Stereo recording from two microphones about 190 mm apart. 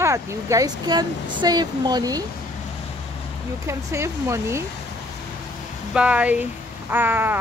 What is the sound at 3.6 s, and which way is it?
Speech, 15° right (ahead or behind).